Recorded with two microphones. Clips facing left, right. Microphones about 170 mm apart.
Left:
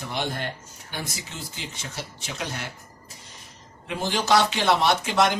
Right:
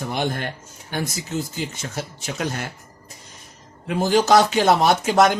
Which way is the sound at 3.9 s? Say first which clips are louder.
Right 6 dB; 45° right (ahead or behind).